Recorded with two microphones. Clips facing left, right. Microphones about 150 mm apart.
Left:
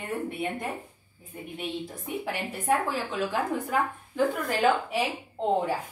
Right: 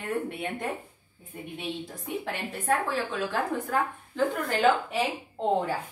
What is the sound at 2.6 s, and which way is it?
Speech, 15° left (ahead or behind).